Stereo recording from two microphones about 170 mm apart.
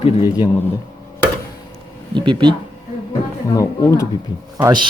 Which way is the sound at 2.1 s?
30° right (ahead or behind).